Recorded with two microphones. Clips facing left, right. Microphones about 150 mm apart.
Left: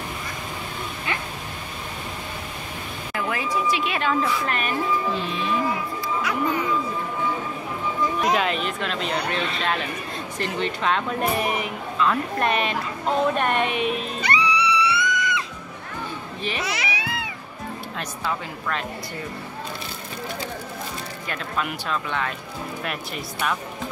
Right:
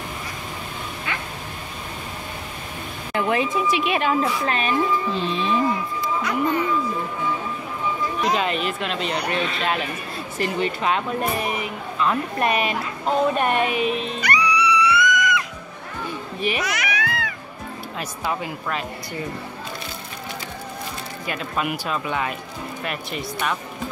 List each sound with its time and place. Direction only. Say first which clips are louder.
3.2 s speech: right 4 dB; 25° right (ahead or behind)
6.2 s speech: right 2 dB; 10° left (ahead or behind)
8.2 s a woman's voice: right 1 dB; centre (ahead or behind)
14.2 s music: right 1 dB; 25° left (ahead or behind)
16.3 s a child's voice: right 5 dB; 15° right (ahead or behind)
16.6 s baby cry: right 2 dB; 30° left (ahead or behind)
17.9 s a woman's voice: right 3 dB; 5° right (ahead or behind)
21.3 s speech: right 3 dB; 10° right (ahead or behind)
22.8 s a woman's voice: right 2 dB; centre (ahead or behind)